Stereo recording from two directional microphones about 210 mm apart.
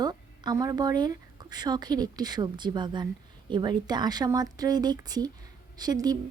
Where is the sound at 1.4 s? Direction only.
20° right (ahead or behind).